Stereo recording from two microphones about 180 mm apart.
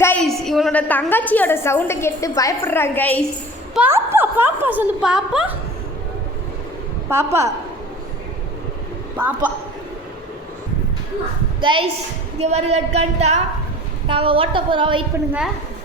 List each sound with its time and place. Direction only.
0.0 s a woman's voice: 5° left (ahead or behind)
3.8 s a woman's voice: 10° right (ahead or behind)
7.1 s a woman's voice: 15° right (ahead or behind)
9.1 s a woman's voice: 10° right (ahead or behind)
11.6 s a woman's voice: 25° right (ahead or behind)